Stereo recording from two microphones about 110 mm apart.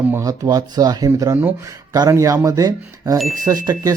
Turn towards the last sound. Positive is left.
turn(degrees=-35)  # may be behind; listen again after turning